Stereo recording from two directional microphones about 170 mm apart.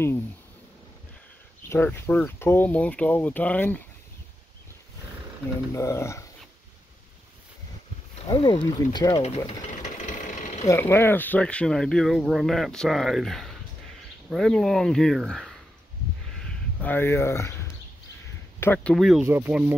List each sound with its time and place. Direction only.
1.7 s speech: 15° left (ahead or behind)
5.7 s speech: 15° left (ahead or behind)
8.3 s speech: 25° left (ahead or behind)
10.0 s sewing machine: 45° left (ahead or behind)
10.7 s speech: 15° left (ahead or behind)
16.8 s speech: 10° left (ahead or behind)
18.6 s speech: 10° left (ahead or behind)
18.9 s speech: centre (ahead or behind)
19.2 s speech: 15° right (ahead or behind)